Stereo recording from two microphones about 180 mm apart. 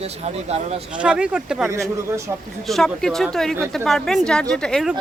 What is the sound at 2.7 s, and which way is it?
Speech, centre (ahead or behind).